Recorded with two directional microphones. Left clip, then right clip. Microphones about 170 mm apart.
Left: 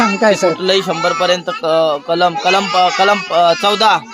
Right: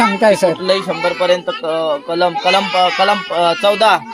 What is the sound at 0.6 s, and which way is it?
Speech, 25° left (ahead or behind).